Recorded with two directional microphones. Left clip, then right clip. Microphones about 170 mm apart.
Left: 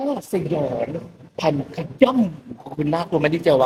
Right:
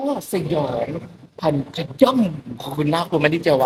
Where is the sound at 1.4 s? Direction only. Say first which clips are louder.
Even; 5° left (ahead or behind).